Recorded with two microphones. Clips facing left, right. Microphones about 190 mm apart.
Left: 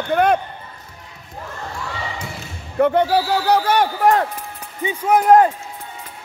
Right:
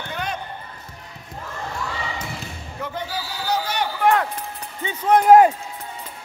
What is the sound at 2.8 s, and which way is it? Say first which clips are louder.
A man's voice: left 15 dB; 60° left (ahead or behind).